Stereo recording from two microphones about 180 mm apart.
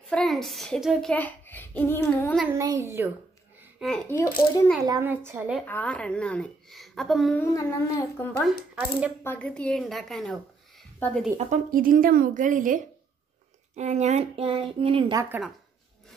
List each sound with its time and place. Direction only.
0.1 s a woman's voice: centre (ahead or behind)
2.5 s a woman's voice: 15° right (ahead or behind)
3.8 s a woman's voice: centre (ahead or behind)
5.0 s a woman's voice: 10° right (ahead or behind)
5.7 s a woman's voice: 10° left (ahead or behind)
7.5 s a woman's voice: 15° left (ahead or behind)
8.7 s a woman's voice: 5° right (ahead or behind)
9.2 s a woman's voice: 10° left (ahead or behind)
11.3 s a woman's voice: 50° right (ahead or behind); by 15.1 s 30° right (ahead or behind)
15.1 s a woman's voice: 10° right (ahead or behind)